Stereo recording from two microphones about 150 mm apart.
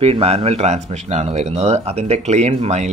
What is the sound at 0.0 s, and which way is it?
Speech, 40° right (ahead or behind).